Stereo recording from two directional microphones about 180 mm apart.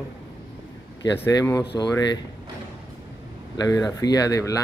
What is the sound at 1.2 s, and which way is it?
Speech, 15° left (ahead or behind).